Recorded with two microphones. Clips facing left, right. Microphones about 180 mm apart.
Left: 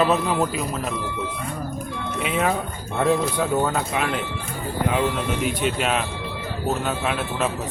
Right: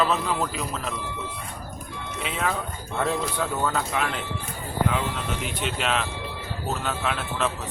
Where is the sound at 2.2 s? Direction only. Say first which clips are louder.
Left 5 dB; 15° left (ahead or behind).